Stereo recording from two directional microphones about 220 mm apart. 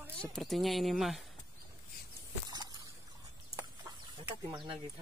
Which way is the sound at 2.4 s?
20° right (ahead or behind).